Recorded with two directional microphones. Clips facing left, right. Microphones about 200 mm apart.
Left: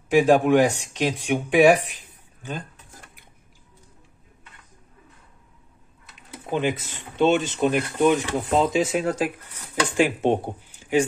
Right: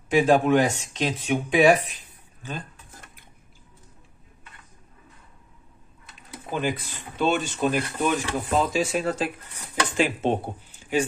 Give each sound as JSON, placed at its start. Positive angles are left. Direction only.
{"t": 0.1, "sound": "speech", "side_deg": 15}
{"t": 6.5, "sound": "speech", "side_deg": 20}